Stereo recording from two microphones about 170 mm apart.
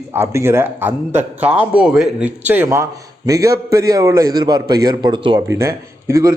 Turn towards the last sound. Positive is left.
turn(degrees=-20)  # may be behind; listen again after turning